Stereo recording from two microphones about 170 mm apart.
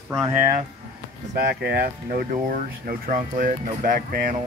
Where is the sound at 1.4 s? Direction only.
70° right (ahead or behind).